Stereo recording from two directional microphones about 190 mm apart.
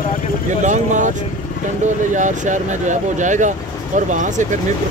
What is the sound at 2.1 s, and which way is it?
Speech, 40° right (ahead or behind).